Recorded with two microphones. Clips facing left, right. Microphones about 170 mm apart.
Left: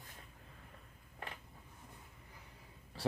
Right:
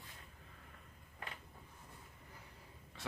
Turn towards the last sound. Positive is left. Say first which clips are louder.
# left 10 dB
turn(degrees=35)  # may be behind; listen again after turning